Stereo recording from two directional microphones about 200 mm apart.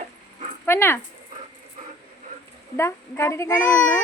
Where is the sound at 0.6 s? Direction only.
10° left (ahead or behind).